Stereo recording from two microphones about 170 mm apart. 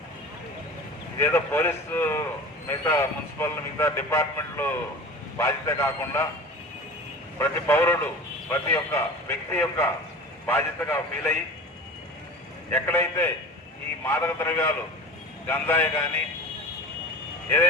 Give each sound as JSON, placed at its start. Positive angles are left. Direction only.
{"t": 1.2, "sound": "a man's voice", "side_deg": 10}
{"t": 7.3, "sound": "a man's voice", "side_deg": 15}
{"t": 12.7, "sound": "a man's voice", "side_deg": 10}